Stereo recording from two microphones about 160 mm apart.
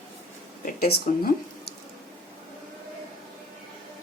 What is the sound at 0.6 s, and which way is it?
Speech, 70° left (ahead or behind).